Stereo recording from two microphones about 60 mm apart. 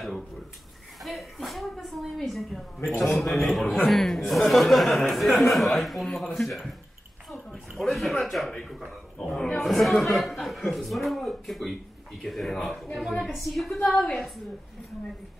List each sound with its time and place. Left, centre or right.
1.0 s a woman's voice: centre
7.2 s a sound: centre
9.6 s a man's voice: centre